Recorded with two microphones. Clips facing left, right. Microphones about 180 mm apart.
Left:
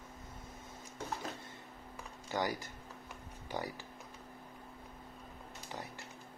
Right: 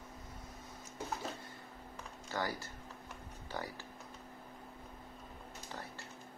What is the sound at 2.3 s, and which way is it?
Speech, 15° left (ahead or behind).